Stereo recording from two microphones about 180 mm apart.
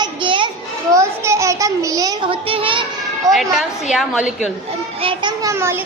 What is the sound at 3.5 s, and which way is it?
Speech, centre (ahead or behind).